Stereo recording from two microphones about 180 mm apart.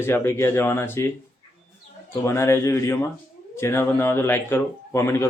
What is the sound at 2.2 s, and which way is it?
Speech, 15° left (ahead or behind).